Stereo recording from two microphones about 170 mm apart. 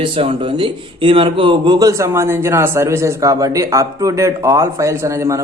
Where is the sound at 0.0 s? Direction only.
30° right (ahead or behind).